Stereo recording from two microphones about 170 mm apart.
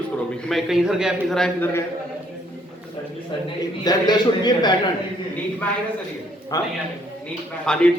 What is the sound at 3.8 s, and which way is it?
Speech, 25° left (ahead or behind).